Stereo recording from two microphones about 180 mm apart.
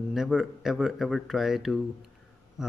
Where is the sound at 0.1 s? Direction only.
Centre (ahead or behind).